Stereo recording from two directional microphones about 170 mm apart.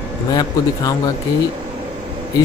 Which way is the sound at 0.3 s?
20° left (ahead or behind).